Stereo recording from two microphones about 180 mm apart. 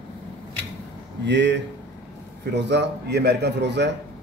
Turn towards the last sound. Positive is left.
turn(degrees=-70)  # may be behind; listen again after turning